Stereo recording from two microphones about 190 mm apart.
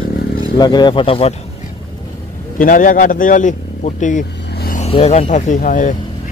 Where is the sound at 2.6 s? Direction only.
45° left (ahead or behind).